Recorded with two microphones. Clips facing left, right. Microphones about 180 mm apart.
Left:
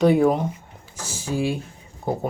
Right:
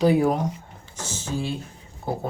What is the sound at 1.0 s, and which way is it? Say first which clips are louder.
Speech: left 4 dB; 10° left (ahead or behind).